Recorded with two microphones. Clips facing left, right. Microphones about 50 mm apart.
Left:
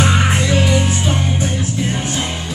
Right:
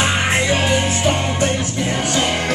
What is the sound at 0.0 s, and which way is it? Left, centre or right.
Music, right.